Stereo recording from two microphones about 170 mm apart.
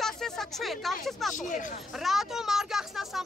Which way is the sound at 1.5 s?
50° left (ahead or behind).